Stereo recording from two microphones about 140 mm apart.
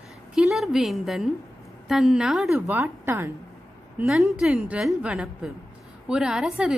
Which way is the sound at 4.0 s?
5° right (ahead or behind).